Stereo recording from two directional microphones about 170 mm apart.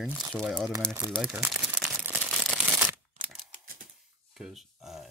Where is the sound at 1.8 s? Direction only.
10° right (ahead or behind).